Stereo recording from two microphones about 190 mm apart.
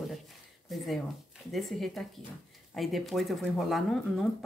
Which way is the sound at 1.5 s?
Centre (ahead or behind).